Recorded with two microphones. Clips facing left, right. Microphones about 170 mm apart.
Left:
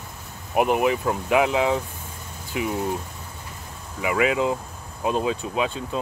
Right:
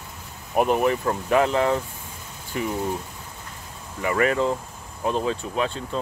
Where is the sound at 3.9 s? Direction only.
5° left (ahead or behind).